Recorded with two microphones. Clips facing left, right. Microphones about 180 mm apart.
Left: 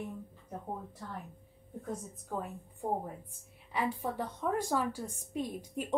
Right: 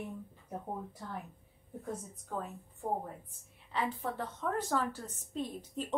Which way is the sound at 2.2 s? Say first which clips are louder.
Left 2 dB; 15° left (ahead or behind).